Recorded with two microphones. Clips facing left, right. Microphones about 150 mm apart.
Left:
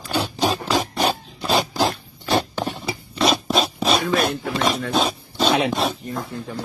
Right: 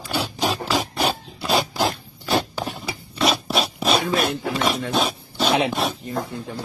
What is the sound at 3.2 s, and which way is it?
Zipper, 5° right (ahead or behind).